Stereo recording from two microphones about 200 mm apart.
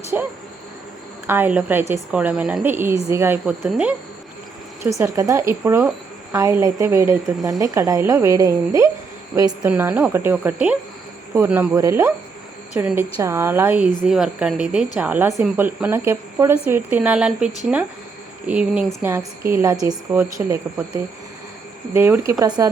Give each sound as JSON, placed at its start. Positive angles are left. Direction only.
{"t": 0.1, "sound": "a woman's voice", "side_deg": -10}
{"t": 1.3, "sound": "a woman's voice", "side_deg": -10}
{"t": 4.8, "sound": "a woman's voice", "side_deg": -15}
{"t": 21.9, "sound": "a woman's voice", "side_deg": -10}